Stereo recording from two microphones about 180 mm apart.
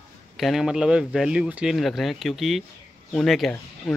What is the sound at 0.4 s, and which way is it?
Speech, centre (ahead or behind).